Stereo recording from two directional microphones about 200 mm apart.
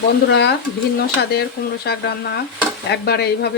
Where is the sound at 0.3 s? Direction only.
55° left (ahead or behind).